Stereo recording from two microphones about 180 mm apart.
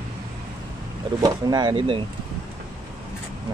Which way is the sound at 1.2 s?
20° right (ahead or behind).